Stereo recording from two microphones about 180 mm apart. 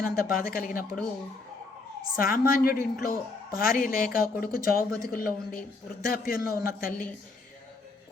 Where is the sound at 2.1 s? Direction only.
50° left (ahead or behind).